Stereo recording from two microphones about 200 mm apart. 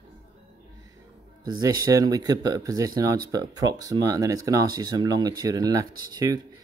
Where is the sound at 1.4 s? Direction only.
20° right (ahead or behind).